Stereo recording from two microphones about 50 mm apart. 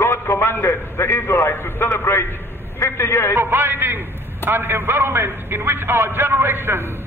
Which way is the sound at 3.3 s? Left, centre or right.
Right.